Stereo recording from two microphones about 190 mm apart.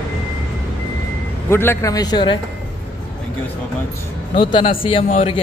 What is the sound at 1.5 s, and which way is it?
Speech, 10° left (ahead or behind).